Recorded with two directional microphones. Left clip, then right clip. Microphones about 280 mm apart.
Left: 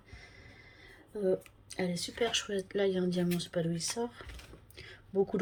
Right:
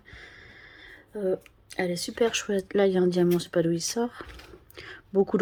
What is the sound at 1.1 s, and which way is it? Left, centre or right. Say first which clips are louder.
Speech: right 3 dB; centre.